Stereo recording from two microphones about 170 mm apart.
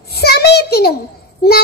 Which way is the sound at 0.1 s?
70° left (ahead or behind).